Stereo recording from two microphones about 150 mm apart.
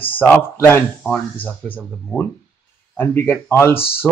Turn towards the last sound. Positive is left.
turn(degrees=15)  # may be behind; listen again after turning